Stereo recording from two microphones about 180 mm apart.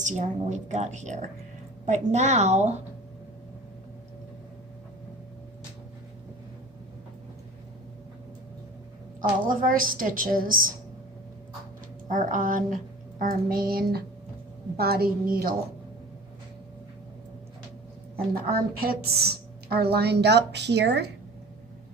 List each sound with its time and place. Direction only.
0.0 s a woman's voice: 40° right (ahead or behind)
9.4 s a child's voice: 50° right (ahead or behind)
12.0 s a child's voice: 45° right (ahead or behind)
18.3 s a woman's voice: 55° right (ahead or behind)